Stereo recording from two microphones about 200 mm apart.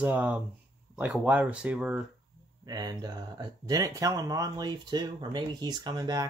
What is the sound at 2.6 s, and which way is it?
Speech, 20° right (ahead or behind).